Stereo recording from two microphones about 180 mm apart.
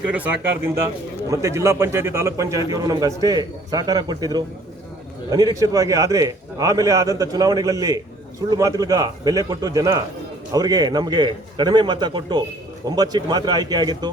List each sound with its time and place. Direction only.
0.1 s a man's voice: 10° right (ahead or behind)